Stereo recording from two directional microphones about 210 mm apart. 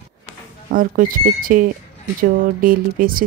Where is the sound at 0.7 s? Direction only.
40° right (ahead or behind).